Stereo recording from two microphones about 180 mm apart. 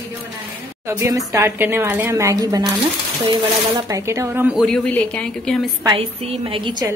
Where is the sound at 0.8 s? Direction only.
20° right (ahead or behind).